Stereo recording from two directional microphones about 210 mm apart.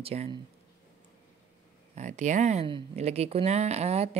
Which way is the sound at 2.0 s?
35° right (ahead or behind).